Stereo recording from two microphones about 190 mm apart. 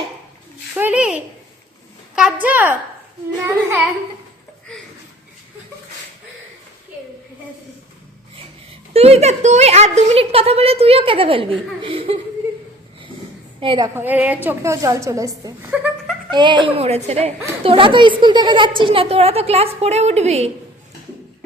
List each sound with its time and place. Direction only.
0.8 s a sound: 5° right (ahead or behind)
2.1 s a woman's voice: 5° right (ahead or behind)
8.9 s a woman's voice: 30° right (ahead or behind)
11.8 s chuckle: 30° right (ahead or behind)
13.6 s a woman's voice: 25° right (ahead or behind)
13.9 s a woman's voice: 10° right (ahead or behind)
16.3 s a woman's voice: 25° right (ahead or behind)